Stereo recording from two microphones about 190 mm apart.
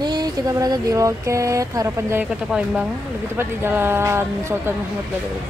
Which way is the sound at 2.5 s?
5° right (ahead or behind).